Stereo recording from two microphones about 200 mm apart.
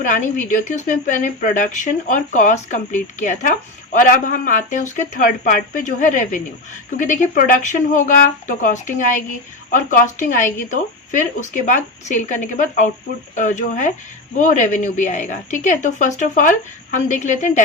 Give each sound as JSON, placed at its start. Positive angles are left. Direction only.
{"t": 0.0, "sound": "speech", "side_deg": 40}